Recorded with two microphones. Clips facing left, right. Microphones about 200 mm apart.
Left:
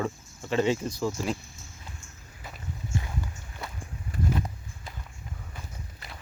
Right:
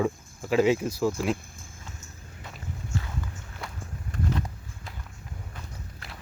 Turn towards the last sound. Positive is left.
turn(degrees=0)  # may be behind; listen again after turning